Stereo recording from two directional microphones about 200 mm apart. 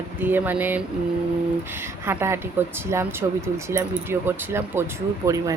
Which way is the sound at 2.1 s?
10° right (ahead or behind).